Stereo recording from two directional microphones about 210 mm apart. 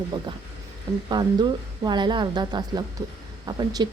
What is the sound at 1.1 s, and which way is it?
A woman's voice, 20° right (ahead or behind).